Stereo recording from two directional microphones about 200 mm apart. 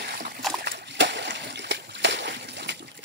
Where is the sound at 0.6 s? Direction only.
55° right (ahead or behind).